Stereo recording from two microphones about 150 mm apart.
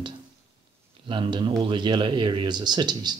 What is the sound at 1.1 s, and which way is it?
Speech, 35° right (ahead or behind).